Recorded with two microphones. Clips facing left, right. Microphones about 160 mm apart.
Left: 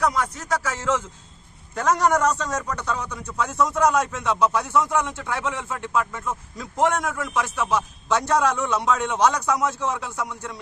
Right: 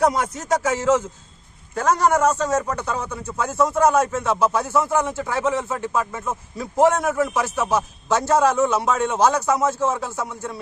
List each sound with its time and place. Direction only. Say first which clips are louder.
0.0 s speech: right 4 dB; 25° right (ahead or behind)
1.7 s a man's voice: right 2 dB; centre (ahead or behind)